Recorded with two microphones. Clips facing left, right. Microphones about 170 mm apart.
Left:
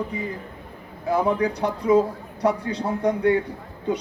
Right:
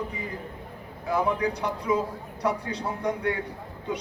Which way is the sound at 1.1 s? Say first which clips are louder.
Left 4 dB; 30° left (ahead or behind).